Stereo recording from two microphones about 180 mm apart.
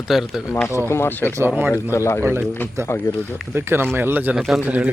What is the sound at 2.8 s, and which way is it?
Speech, 15° right (ahead or behind).